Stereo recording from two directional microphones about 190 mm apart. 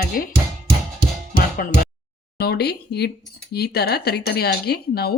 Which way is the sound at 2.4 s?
60° left (ahead or behind).